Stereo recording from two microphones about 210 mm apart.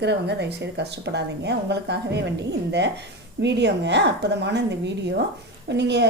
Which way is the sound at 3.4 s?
55° right (ahead or behind).